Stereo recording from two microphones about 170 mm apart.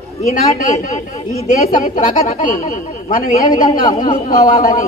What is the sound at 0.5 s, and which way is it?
Speech, 50° left (ahead or behind).